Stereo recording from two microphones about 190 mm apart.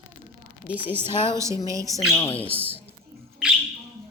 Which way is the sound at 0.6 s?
10° right (ahead or behind).